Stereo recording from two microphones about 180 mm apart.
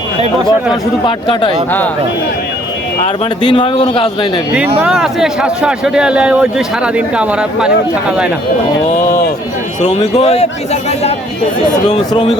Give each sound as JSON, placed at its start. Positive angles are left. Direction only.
{"t": 1.0, "sound": "speech", "side_deg": 25}
{"t": 3.4, "sound": "speech", "side_deg": 25}
{"t": 4.8, "sound": "a man's voice", "side_deg": -5}
{"t": 9.0, "sound": "speech", "side_deg": 55}
{"t": 9.8, "sound": "speech", "side_deg": 35}